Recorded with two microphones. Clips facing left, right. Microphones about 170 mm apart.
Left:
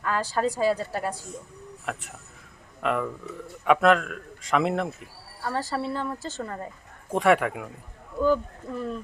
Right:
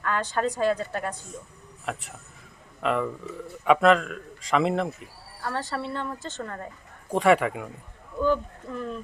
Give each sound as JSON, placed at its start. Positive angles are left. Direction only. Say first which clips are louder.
{"t": 0.0, "sound": "a woman's voice", "louder": "left 1 dB", "side_deg": 5}